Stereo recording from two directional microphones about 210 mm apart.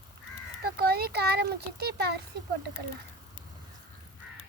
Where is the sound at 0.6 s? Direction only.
50° right (ahead or behind).